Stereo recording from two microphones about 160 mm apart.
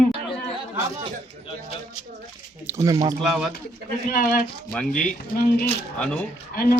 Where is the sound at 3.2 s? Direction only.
Centre (ahead or behind).